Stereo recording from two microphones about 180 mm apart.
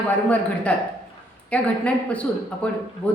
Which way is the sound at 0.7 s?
5° left (ahead or behind).